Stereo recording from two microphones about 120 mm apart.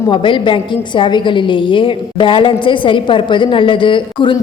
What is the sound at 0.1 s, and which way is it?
A woman's voice, 45° left (ahead or behind).